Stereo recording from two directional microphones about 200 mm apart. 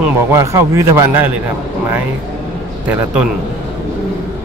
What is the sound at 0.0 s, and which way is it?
Speech, 15° right (ahead or behind).